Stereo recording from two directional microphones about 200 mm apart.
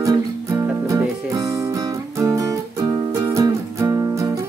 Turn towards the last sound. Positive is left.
turn(degrees=-15)  # may be behind; listen again after turning